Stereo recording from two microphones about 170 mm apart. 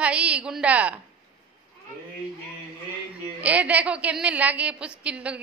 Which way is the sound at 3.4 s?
10° right (ahead or behind).